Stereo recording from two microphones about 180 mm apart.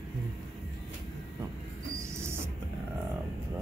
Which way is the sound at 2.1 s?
15° right (ahead or behind).